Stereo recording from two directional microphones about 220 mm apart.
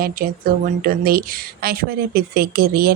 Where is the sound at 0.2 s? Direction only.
40° right (ahead or behind).